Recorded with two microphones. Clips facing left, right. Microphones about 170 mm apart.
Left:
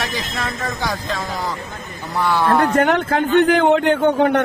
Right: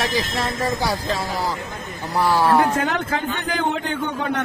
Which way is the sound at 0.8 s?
30° right (ahead or behind).